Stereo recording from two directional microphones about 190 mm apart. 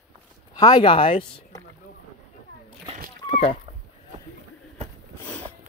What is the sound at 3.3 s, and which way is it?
Speech, 30° left (ahead or behind).